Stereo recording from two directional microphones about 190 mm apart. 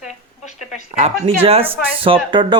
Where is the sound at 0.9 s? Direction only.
45° right (ahead or behind).